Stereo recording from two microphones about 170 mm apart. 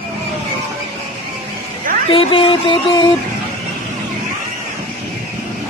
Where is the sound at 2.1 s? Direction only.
30° left (ahead or behind).